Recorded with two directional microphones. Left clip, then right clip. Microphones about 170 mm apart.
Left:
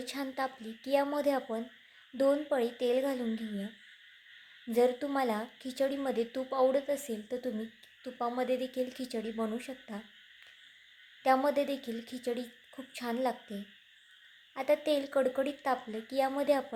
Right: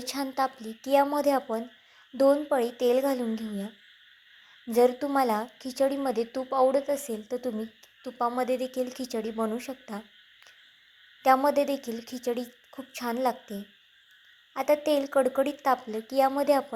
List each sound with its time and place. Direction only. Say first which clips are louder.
0.0 s a woman's voice: right 7 dB; 15° right (ahead or behind)
4.7 s a woman's voice: right 6 dB; 15° right (ahead or behind)
11.2 s a woman's voice: right 6 dB; 15° right (ahead or behind)